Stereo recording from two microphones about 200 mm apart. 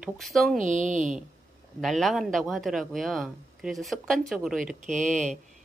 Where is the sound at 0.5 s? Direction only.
40° right (ahead or behind).